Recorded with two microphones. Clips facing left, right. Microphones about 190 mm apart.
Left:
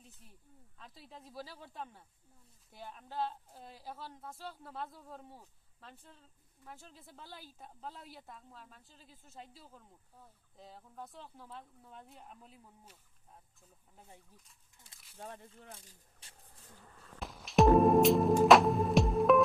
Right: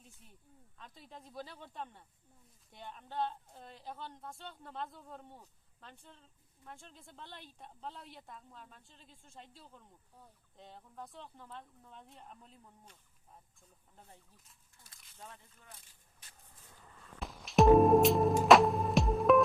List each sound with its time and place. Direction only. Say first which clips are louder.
0.0 s speech: left 1 dB; centre (ahead or behind)
15.2 s speech: left 6 dB; 50° left (ahead or behind)
17.2 s music: even; centre (ahead or behind)